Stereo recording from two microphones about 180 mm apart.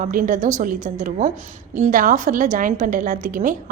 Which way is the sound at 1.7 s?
50° right (ahead or behind).